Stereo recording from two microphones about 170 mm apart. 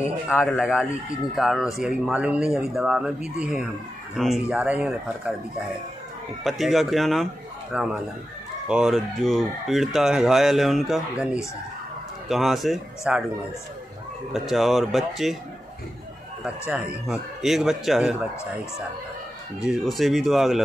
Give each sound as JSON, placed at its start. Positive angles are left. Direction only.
{"t": 0.5, "sound": "fowl", "side_deg": -5}
{"t": 6.4, "sound": "fowl", "side_deg": 0}
{"t": 14.3, "sound": "fowl", "side_deg": 0}
{"t": 16.4, "sound": "fowl", "side_deg": -5}
{"t": 19.6, "sound": "fowl", "side_deg": 0}